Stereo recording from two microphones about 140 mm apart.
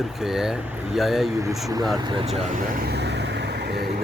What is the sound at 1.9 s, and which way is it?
Speech, 35° right (ahead or behind).